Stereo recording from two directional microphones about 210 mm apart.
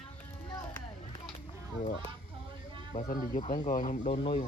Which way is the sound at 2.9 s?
40° left (ahead or behind).